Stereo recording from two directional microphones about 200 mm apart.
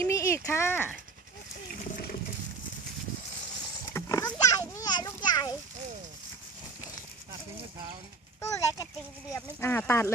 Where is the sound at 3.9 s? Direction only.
15° left (ahead or behind).